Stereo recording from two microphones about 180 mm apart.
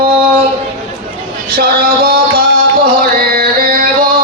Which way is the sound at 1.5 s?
55° right (ahead or behind).